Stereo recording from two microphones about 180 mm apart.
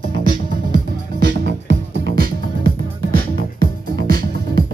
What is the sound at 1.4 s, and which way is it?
Music, 70° right (ahead or behind).